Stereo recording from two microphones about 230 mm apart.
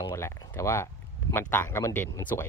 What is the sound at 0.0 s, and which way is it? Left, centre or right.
Speech, centre.